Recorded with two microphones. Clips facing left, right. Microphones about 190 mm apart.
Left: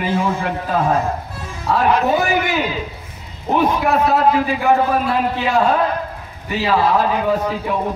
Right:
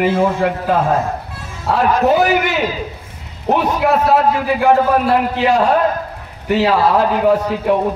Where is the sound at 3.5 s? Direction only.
75° right (ahead or behind).